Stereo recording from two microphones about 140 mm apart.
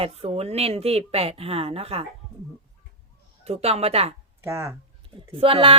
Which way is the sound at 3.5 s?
45° right (ahead or behind).